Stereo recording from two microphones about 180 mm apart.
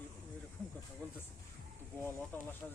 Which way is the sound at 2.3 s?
10° left (ahead or behind).